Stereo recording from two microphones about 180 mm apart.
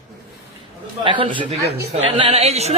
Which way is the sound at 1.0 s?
25° right (ahead or behind).